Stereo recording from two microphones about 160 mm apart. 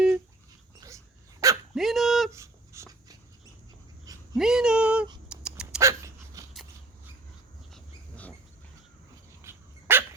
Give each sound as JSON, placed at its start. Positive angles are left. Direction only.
{"t": 0.8, "sound": "dog", "side_deg": -20}
{"t": 1.7, "sound": "dog", "side_deg": 0}
{"t": 2.3, "sound": "dog", "side_deg": -20}
{"t": 4.4, "sound": "a sound", "side_deg": -5}
{"t": 5.8, "sound": "dog", "side_deg": -20}
{"t": 7.7, "sound": "dog", "side_deg": 10}
{"t": 9.4, "sound": "dog", "side_deg": -15}